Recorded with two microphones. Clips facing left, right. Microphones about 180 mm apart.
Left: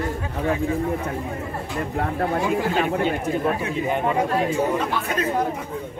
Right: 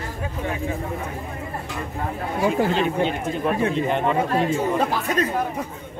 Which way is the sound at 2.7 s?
50° left (ahead or behind).